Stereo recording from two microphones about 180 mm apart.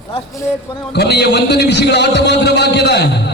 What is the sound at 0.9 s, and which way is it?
A man's voice, 65° left (ahead or behind).